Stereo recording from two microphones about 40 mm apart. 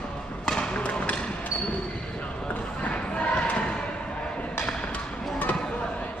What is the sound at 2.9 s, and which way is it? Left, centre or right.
Thump, left.